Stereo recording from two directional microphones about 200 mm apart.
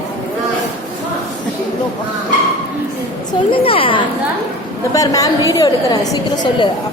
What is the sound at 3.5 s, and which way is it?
A woman's voice, 25° left (ahead or behind).